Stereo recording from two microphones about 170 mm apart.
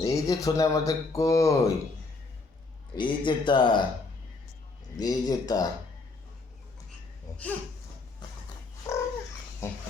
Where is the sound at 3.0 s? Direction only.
30° left (ahead or behind).